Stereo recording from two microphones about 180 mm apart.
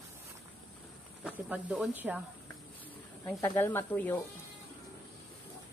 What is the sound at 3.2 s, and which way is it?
Speech, 15° left (ahead or behind).